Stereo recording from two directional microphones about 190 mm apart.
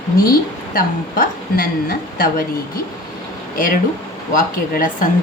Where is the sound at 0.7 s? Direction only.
50° left (ahead or behind).